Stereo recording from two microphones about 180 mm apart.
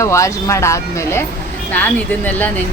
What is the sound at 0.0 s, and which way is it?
Speech, 15° left (ahead or behind).